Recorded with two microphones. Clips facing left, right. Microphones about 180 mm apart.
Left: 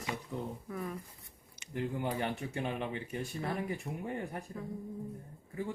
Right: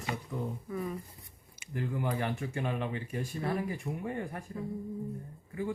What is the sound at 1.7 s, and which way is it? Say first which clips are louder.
Speech: right 1 dB; 25° left (ahead or behind).